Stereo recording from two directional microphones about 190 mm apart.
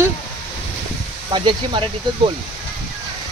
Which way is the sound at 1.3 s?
25° right (ahead or behind).